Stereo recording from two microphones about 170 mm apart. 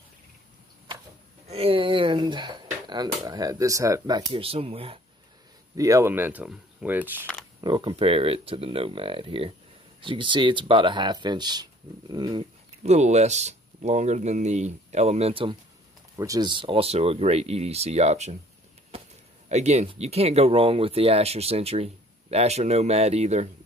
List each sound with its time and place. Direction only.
1.5 s speech: 35° right (ahead or behind); by 4.2 s 20° right (ahead or behind)
4.3 s speech: 35° right (ahead or behind)
5.8 s speech: 20° right (ahead or behind)
7.6 s speech: 25° right (ahead or behind)
12.8 s speech: 40° right (ahead or behind)
16.2 s speech: 20° right (ahead or behind); by 18.3 s 40° right (ahead or behind)
19.5 s speech: 40° right (ahead or behind)